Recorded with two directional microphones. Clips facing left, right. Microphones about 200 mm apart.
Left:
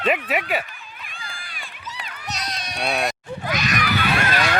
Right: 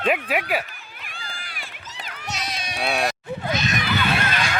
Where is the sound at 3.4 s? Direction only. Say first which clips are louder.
Left 1 dB; 25° right (ahead or behind).